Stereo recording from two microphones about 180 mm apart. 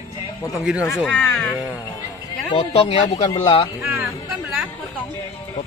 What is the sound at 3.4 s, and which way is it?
Speech, 30° left (ahead or behind).